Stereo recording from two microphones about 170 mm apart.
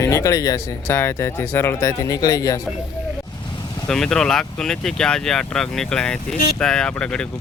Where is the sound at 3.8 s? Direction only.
5° left (ahead or behind).